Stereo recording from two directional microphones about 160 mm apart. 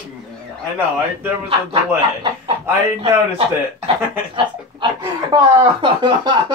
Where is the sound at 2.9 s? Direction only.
35° right (ahead or behind).